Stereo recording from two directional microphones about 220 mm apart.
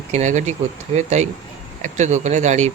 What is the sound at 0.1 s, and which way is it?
Speech, 35° right (ahead or behind).